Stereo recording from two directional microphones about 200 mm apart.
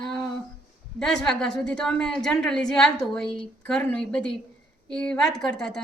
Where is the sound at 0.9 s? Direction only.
5° left (ahead or behind).